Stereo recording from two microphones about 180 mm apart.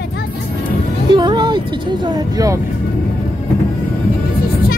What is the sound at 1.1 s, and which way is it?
Music, 25° right (ahead or behind).